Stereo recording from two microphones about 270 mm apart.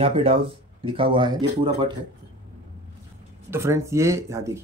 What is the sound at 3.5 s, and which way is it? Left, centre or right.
Speech, centre.